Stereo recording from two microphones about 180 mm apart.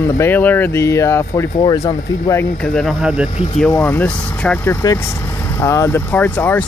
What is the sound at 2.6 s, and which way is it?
Speech, centre (ahead or behind).